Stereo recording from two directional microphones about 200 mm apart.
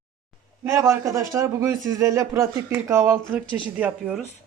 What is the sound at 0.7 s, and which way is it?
A man's voice, 15° right (ahead or behind).